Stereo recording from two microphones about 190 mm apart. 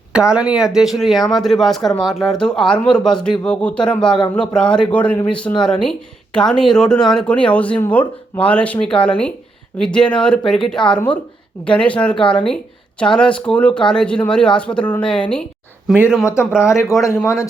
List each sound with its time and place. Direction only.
0.1 s speech: 5° right (ahead or behind)
16.2 s speech: 15° left (ahead or behind)